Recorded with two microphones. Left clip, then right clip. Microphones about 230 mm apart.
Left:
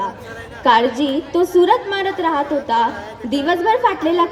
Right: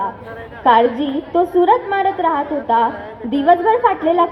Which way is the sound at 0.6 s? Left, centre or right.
Left.